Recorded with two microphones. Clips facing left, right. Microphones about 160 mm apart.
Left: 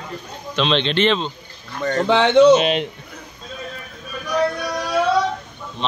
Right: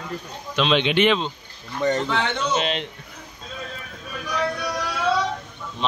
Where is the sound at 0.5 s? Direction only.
5° right (ahead or behind).